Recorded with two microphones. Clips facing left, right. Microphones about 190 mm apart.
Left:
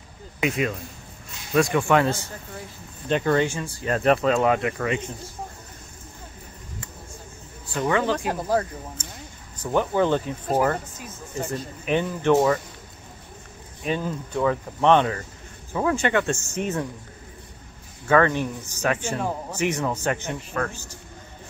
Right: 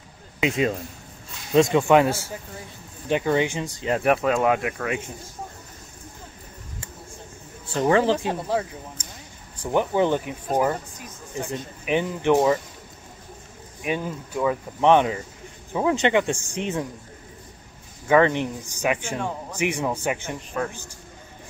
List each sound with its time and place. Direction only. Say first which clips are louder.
0.4 s speech: right 2 dB; 25° right (ahead or behind); by 5.1 s 10° right (ahead or behind)
7.6 s speech: right 4 dB; 25° right (ahead or behind)
8.3 s speech: left 1 dB; centre (ahead or behind)
9.6 s speech: right 1 dB; 15° right (ahead or behind)
11.8 s speech: even; 15° right (ahead or behind)
13.8 s speech: left 1 dB; 10° right (ahead or behind)
18.0 s speech: right 1 dB; 20° right (ahead or behind)